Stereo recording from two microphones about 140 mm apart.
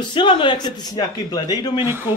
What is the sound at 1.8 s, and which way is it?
Speech, 15° right (ahead or behind).